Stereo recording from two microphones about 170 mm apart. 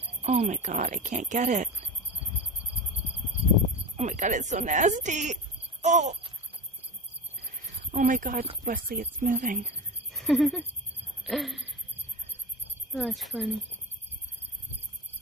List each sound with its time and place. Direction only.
0.2 s speech: 40° right (ahead or behind)
3.9 s speech: 45° right (ahead or behind)
7.9 s speech: 50° right (ahead or behind)
10.1 s a sound: centre (ahead or behind)
11.2 s speech: centre (ahead or behind)
12.9 s speech: centre (ahead or behind)